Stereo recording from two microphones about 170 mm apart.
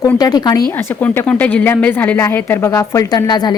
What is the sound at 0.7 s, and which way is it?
A woman's voice, 10° left (ahead or behind).